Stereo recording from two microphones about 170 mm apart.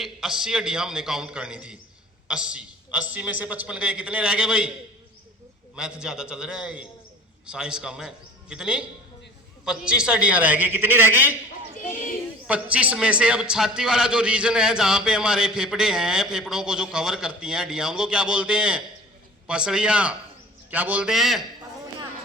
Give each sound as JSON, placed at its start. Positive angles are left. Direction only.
{"t": 0.0, "sound": "a man's voice", "side_deg": -5}
{"t": 5.7, "sound": "a man's voice", "side_deg": -5}
{"t": 12.5, "sound": "a man's voice", "side_deg": -5}